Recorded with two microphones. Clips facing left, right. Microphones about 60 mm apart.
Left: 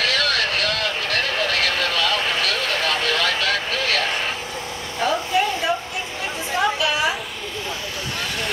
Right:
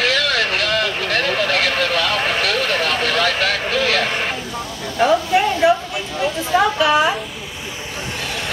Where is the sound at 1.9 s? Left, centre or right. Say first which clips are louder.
Right 3 dB; right.